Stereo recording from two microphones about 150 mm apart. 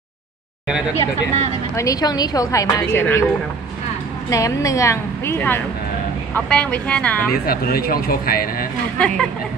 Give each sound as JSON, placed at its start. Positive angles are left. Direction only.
{"t": 1.8, "sound": "a woman's voice", "side_deg": 25}
{"t": 4.3, "sound": "a woman's voice", "side_deg": 20}
{"t": 7.4, "sound": "a man's voice", "side_deg": 85}
{"t": 8.9, "sound": "speech", "side_deg": 5}